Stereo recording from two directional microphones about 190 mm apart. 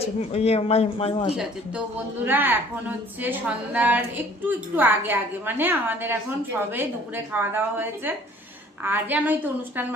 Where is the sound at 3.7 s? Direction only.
10° right (ahead or behind).